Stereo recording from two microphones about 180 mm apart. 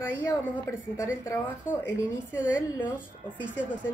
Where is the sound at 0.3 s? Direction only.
15° left (ahead or behind).